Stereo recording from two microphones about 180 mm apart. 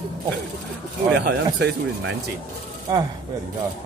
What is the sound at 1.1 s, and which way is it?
Speech, 80° right.